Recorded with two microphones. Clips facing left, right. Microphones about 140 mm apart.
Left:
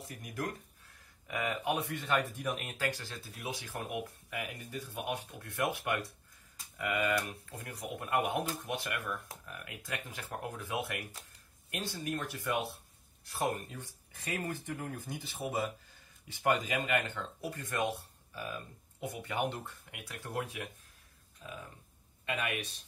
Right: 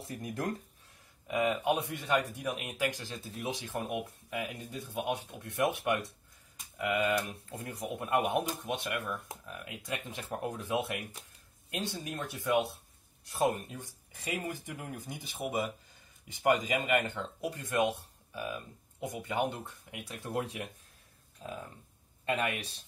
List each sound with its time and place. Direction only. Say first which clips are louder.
0.2 s speech: right 3 dB; 25° right (ahead or behind)
22.2 s speech: right 4 dB; 35° right (ahead or behind)